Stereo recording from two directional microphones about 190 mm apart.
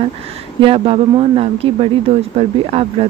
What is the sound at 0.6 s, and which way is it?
Speech, 30° right (ahead or behind).